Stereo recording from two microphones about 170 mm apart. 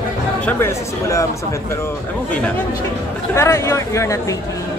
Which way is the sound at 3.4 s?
15° left (ahead or behind).